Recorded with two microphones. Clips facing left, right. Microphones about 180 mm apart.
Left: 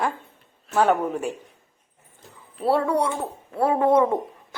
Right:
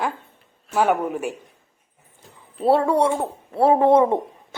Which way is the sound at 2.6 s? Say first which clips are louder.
Right 4 dB; 25° right (ahead or behind).